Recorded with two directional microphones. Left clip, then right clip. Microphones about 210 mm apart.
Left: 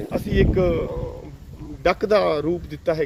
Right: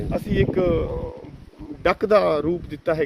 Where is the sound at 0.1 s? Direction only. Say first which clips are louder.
Left 1 dB; 45° right (ahead or behind).